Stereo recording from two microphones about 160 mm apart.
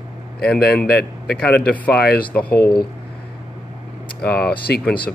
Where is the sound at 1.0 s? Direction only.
90° left.